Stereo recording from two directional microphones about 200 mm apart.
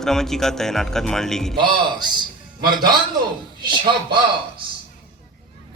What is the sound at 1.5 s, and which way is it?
Speech, 20° right (ahead or behind).